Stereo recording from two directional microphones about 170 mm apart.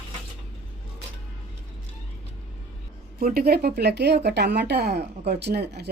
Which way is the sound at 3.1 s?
60° right (ahead or behind).